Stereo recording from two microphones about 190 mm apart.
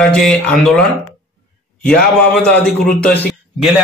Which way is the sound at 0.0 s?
5° left (ahead or behind).